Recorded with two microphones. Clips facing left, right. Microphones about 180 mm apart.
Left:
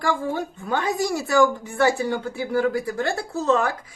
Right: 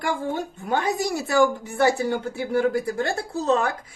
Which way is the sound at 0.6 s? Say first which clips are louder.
Even; 20° right (ahead or behind).